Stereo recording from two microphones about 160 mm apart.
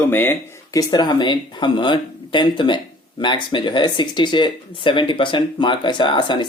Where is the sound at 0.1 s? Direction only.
15° left (ahead or behind).